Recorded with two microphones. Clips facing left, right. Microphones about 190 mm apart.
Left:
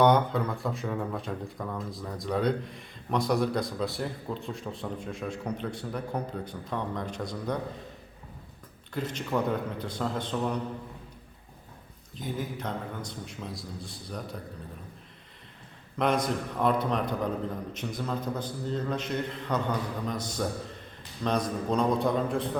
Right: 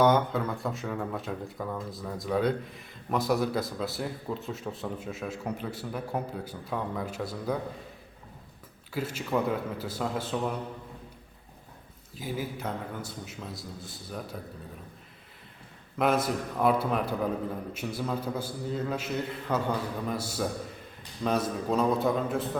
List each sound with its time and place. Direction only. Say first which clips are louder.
0.0 s speech: left 1 dB; centre (ahead or behind)
8.9 s a man's voice: even; 5° right (ahead or behind)
12.1 s speech: even; 5° right (ahead or behind)
16.0 s a man's voice: right 1 dB; 5° right (ahead or behind)